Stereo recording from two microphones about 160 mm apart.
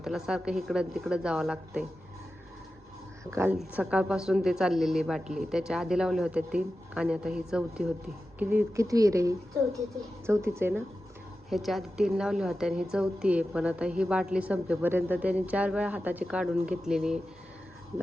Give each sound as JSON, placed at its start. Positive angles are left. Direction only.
{"t": 0.0, "sound": "speech", "side_deg": -5}
{"t": 3.2, "sound": "speech", "side_deg": -15}
{"t": 11.4, "sound": "speech", "side_deg": 0}